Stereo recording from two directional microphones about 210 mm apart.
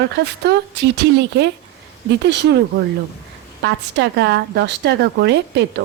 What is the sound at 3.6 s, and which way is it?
A woman's voice, 55° right (ahead or behind).